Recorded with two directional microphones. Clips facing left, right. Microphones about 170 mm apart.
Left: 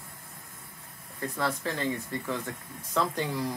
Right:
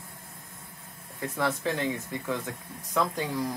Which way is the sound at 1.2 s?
15° right (ahead or behind).